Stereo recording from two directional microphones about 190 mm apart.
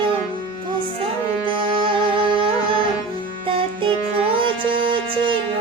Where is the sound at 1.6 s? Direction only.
25° right (ahead or behind).